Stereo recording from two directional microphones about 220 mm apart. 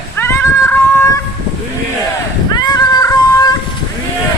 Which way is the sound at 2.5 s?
20° left (ahead or behind).